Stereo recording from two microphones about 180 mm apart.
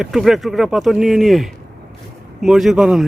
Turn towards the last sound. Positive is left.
turn(degrees=-5)  # may be behind; listen again after turning